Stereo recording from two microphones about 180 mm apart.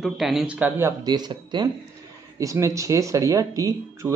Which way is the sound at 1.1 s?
25° right (ahead or behind).